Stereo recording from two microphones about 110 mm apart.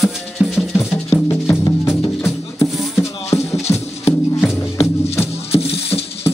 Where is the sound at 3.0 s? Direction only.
25° left (ahead or behind).